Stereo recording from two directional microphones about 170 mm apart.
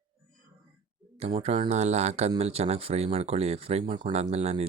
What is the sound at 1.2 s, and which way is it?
Speech, 35° right (ahead or behind).